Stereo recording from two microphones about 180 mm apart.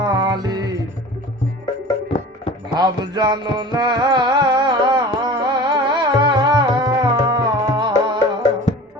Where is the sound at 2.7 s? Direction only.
20° right (ahead or behind).